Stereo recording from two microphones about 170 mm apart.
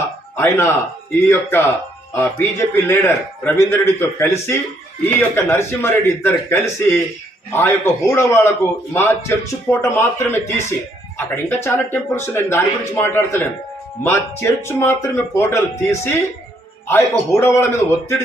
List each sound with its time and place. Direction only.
0.3 s a man's voice: 15° left (ahead or behind)